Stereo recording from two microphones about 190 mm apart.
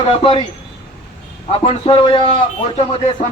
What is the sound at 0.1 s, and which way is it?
Speech, 30° left (ahead or behind).